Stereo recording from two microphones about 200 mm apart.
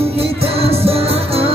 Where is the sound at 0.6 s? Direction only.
30° right (ahead or behind).